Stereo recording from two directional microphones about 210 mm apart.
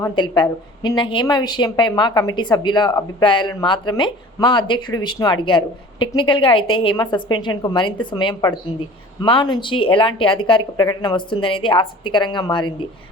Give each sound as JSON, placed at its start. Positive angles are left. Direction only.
{"t": 0.0, "sound": "a woman's voice", "side_deg": 20}